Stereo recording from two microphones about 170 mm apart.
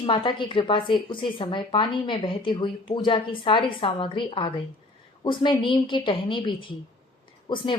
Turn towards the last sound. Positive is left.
turn(degrees=25)  # may be behind; listen again after turning